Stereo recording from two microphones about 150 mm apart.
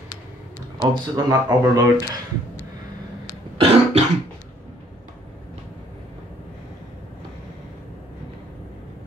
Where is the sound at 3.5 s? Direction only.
40° right (ahead or behind).